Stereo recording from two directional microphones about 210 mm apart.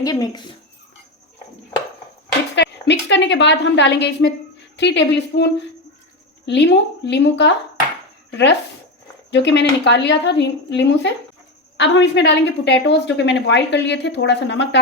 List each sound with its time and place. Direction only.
0.0 s speech: 15° left (ahead or behind)
2.6 s a woman's voice: 55° left (ahead or behind)